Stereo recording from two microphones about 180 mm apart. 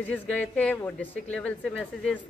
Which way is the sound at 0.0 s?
10° left (ahead or behind).